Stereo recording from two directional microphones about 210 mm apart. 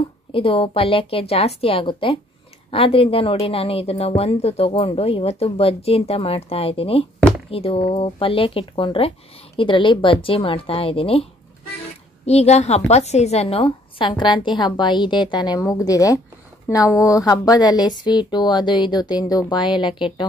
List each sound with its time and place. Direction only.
0.3 s a woman's voice: 25° left (ahead or behind)
12.3 s a woman's voice: 30° left (ahead or behind)